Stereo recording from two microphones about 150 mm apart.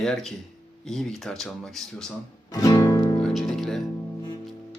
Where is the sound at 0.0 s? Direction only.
Centre (ahead or behind).